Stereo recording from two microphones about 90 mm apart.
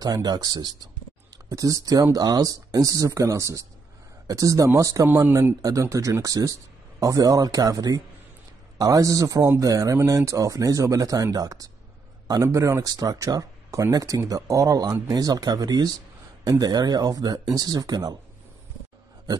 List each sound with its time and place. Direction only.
0.0 s speech: 45° right (ahead or behind)